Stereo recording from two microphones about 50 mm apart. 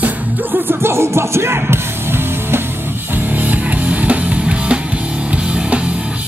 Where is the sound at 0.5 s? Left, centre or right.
Right.